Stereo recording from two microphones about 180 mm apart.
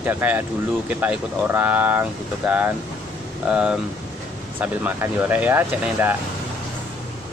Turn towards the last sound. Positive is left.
turn(degrees=-10)  # may be behind; listen again after turning